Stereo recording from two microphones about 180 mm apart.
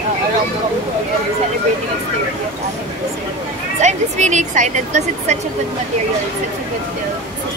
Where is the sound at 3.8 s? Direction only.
40° right (ahead or behind).